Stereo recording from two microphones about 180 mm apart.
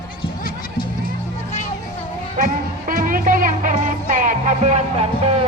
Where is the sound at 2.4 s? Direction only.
50° right (ahead or behind).